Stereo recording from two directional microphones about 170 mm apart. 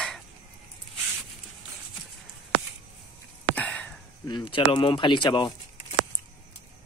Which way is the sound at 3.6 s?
10° left (ahead or behind).